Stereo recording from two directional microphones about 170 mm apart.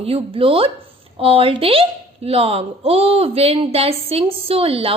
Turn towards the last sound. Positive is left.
turn(degrees=-35)  # may be behind; listen again after turning